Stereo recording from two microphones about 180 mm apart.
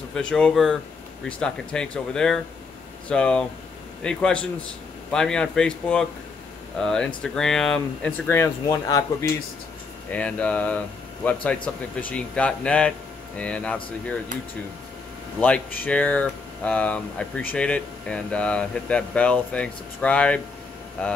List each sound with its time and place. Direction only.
0.1 s speech: 5° left (ahead or behind)
10.1 s speech: 5° left (ahead or behind)
15.4 s speech: 10° left (ahead or behind)